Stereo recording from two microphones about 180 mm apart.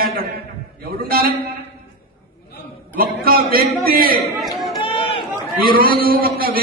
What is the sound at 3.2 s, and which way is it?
Speech, 55° right (ahead or behind).